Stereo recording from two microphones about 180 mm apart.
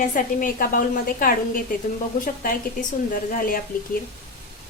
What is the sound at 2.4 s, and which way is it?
Speech, 50° left (ahead or behind).